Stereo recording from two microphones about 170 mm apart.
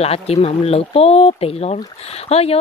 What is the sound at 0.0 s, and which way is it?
Speech, 35° left (ahead or behind).